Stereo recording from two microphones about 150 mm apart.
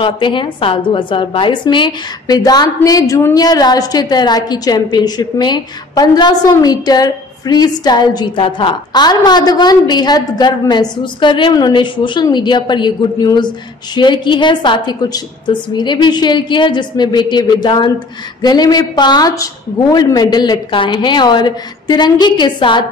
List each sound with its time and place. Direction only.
0.0 s a woman's voice: 35° left (ahead or behind)